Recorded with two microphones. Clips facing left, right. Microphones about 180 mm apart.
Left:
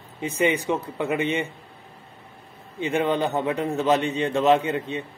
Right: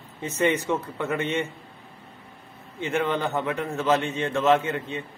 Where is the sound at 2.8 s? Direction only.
15° left (ahead or behind).